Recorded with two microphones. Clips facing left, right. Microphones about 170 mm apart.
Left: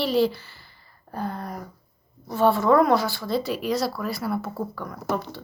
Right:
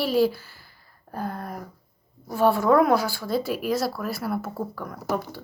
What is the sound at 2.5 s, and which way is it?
Speech, 50° right (ahead or behind).